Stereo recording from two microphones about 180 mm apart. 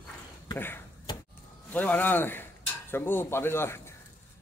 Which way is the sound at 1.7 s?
10° left (ahead or behind).